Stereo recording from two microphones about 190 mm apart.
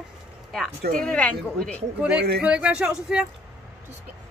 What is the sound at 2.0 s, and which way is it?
Speech, 5° right (ahead or behind).